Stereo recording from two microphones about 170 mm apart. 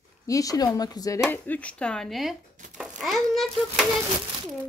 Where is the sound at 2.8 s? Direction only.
Centre (ahead or behind).